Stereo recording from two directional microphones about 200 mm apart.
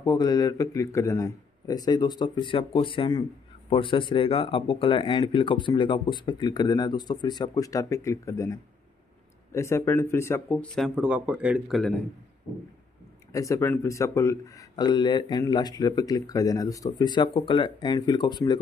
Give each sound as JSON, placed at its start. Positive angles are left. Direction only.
{"t": 0.0, "sound": "speech", "side_deg": 20}
{"t": 13.3, "sound": "speech", "side_deg": 15}